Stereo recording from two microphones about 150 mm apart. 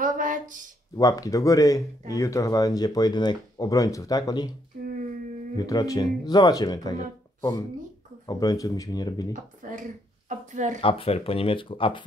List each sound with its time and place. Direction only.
0.0 s a sound: 60° right (ahead or behind)
0.9 s speech: 25° left (ahead or behind)
5.6 s speech: 25° left (ahead or behind)
8.3 s speech: 25° left (ahead or behind)
9.3 s speech: 60° right (ahead or behind)
10.8 s speech: 40° left (ahead or behind)